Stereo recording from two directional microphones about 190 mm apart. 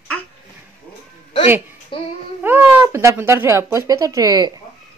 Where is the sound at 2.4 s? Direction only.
10° right (ahead or behind).